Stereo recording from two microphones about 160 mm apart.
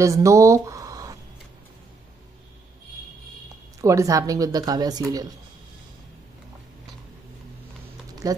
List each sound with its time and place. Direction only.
0.0 s speech: 20° right (ahead or behind)
3.8 s speech: 20° right (ahead or behind)
8.1 s a sound: 20° right (ahead or behind)